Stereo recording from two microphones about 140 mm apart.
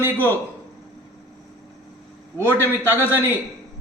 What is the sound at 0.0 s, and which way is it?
Speech, 15° left (ahead or behind).